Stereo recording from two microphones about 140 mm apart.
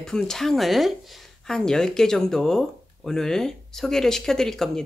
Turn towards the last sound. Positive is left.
turn(degrees=5)  # may be behind; listen again after turning